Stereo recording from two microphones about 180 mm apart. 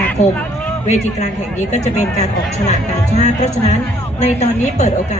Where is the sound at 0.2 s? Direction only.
40° left (ahead or behind).